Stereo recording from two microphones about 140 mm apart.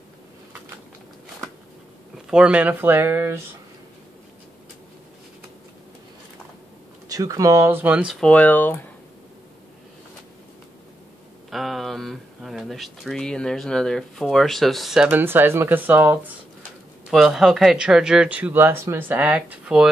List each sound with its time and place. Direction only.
2.2 s speech: 5° right (ahead or behind)
7.1 s speech: 25° right (ahead or behind); by 8.2 s 10° right (ahead or behind)
8.2 s speech: 10° left (ahead or behind)
11.5 s speech: centre (ahead or behind)
15.0 s speech: 15° right (ahead or behind)
17.1 s speech: centre (ahead or behind)